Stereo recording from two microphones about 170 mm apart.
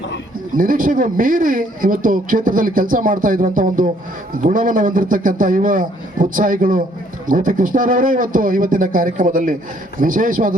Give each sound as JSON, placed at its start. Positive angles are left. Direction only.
{"t": 0.5, "sound": "a man's voice", "side_deg": -55}